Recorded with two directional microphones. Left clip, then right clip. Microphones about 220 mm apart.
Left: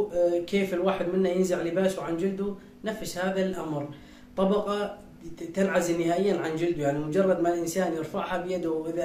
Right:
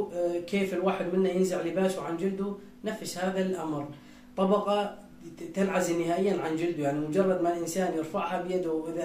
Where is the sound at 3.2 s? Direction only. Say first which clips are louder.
Left 1 dB; 15° left (ahead or behind).